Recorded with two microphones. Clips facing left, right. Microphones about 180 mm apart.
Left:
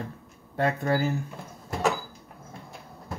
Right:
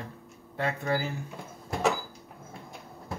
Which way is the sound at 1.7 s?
Centre (ahead or behind).